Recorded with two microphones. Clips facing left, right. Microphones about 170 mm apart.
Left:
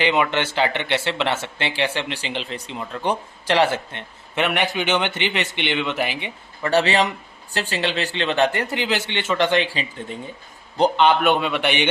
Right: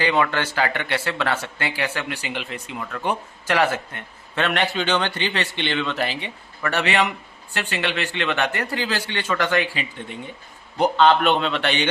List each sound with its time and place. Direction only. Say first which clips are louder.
0.0 s speech: left 1 dB; 20° left (ahead or behind)
4.4 s speech: even; 15° left (ahead or behind)
6.7 s a man's voice: left 3 dB; 35° left (ahead or behind)
11.0 s speech: right 3 dB; 10° left (ahead or behind)